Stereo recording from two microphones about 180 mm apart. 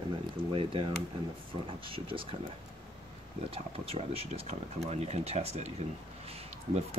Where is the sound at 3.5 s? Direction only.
30° right (ahead or behind).